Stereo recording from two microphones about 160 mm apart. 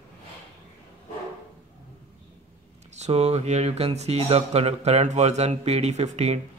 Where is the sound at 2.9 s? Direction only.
45° right (ahead or behind).